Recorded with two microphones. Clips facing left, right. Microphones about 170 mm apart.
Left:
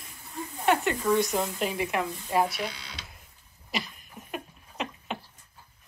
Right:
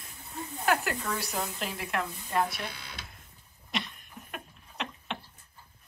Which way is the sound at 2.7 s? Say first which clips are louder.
Even; 50° right (ahead or behind).